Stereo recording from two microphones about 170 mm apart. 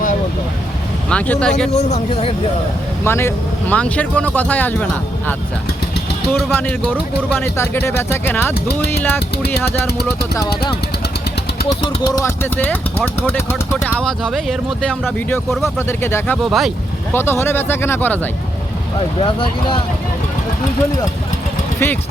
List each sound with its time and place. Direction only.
1.1 s speech: 5° left (ahead or behind)
1.7 s speech: 40° left (ahead or behind)
3.0 s speech: 15° left (ahead or behind)
6.3 s speech: 10° left (ahead or behind)
11.8 s speech: 20° left (ahead or behind)
14.0 s speech: centre (ahead or behind)
17.2 s speech: 15° left (ahead or behind)
18.9 s speech: 30° left (ahead or behind)